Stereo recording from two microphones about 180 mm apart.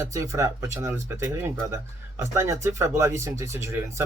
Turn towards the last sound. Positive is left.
turn(degrees=-15)  # may be behind; listen again after turning